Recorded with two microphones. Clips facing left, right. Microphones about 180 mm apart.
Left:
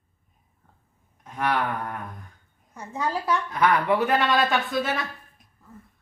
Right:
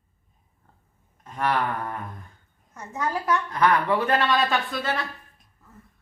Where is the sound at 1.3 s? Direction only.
Centre (ahead or behind).